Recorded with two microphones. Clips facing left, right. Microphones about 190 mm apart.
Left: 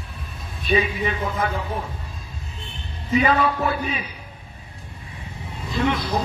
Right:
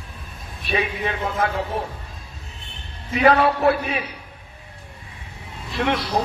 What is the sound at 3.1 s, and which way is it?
Speech, 70° right (ahead or behind).